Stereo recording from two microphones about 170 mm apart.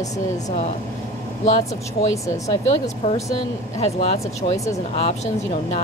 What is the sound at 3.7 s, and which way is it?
Speech, 40° left (ahead or behind).